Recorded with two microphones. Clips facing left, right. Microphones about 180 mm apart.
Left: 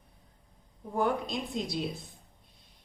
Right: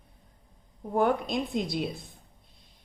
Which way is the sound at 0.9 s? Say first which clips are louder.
Right 4 dB; 60° right (ahead or behind).